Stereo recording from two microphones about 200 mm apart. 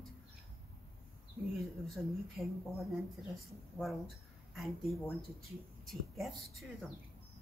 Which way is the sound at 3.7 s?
Centre (ahead or behind).